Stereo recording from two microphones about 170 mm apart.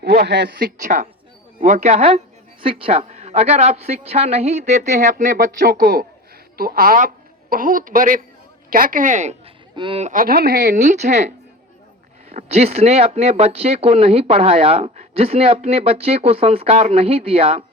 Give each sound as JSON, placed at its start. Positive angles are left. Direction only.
{"t": 0.0, "sound": "speech", "side_deg": -75}
{"t": 0.8, "sound": "a woman's voice", "side_deg": -50}
{"t": 9.7, "sound": "speech", "side_deg": -30}
{"t": 10.1, "sound": "a woman's voice", "side_deg": -55}
{"t": 12.3, "sound": "speech", "side_deg": -40}